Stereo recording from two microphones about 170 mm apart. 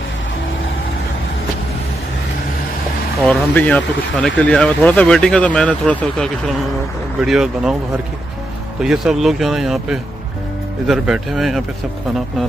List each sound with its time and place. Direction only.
3.3 s speech: 10° left (ahead or behind)
7.2 s speech: 5° right (ahead or behind)
8.8 s speech: 5° right (ahead or behind)